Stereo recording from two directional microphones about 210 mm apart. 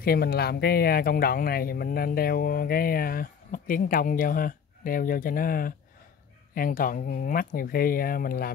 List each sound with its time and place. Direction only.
0.0 s speech: 45° left (ahead or behind)